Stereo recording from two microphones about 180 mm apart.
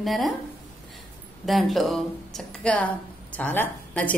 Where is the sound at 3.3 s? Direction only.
10° left (ahead or behind).